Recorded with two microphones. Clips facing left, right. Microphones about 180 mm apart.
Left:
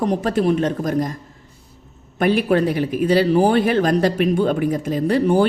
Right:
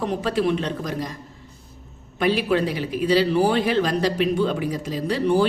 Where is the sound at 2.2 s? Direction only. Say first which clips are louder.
Left 4 dB; 50° left (ahead or behind).